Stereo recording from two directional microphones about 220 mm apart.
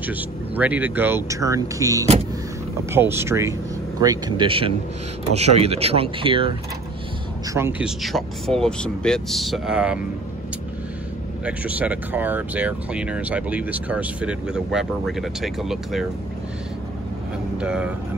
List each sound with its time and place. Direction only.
0.0 s speech: 5° right (ahead or behind); by 6.5 s 25° right (ahead or behind)
7.5 s speech: 10° right (ahead or behind)
8.0 s speech: centre (ahead or behind)
11.4 s speech: 5° right (ahead or behind)
17.6 s speech: 5° right (ahead or behind)